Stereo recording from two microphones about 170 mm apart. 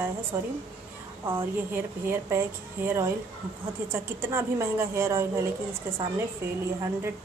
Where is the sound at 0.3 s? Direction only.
15° right (ahead or behind).